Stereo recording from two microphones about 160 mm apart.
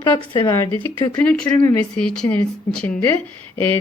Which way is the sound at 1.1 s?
10° left (ahead or behind).